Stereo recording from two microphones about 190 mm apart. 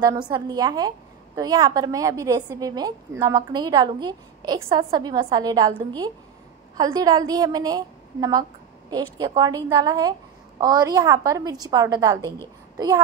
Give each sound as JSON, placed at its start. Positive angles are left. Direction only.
{"t": 0.0, "sound": "a woman's voice", "side_deg": -20}